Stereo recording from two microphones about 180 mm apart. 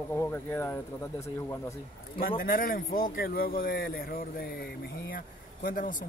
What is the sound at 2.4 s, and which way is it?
Speech, 50° left (ahead or behind).